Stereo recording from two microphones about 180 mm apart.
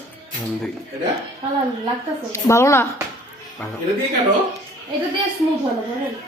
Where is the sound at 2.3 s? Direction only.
15° left (ahead or behind).